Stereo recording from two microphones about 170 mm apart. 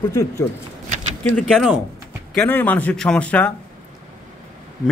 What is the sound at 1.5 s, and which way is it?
Speech, 5° right (ahead or behind).